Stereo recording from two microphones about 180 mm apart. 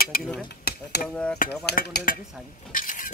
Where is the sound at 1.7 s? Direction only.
60° left (ahead or behind).